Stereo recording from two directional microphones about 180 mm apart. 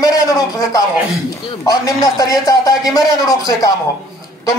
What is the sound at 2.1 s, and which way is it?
Speech, 20° left (ahead or behind).